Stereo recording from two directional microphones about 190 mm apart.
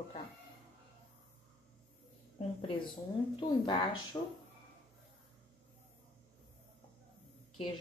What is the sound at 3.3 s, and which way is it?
Speech, 25° left (ahead or behind).